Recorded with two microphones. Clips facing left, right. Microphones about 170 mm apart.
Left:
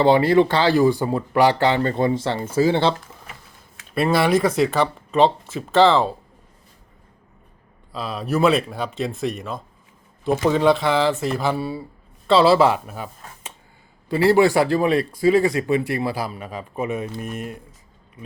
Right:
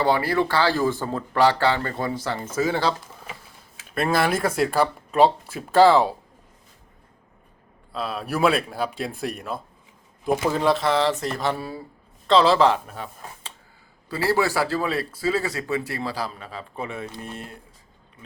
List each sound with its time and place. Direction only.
0.0 s speech: 25° left (ahead or behind)
3.9 s speech: centre (ahead or behind)
7.9 s speech: centre (ahead or behind)
14.1 s a man's voice: 20° left (ahead or behind)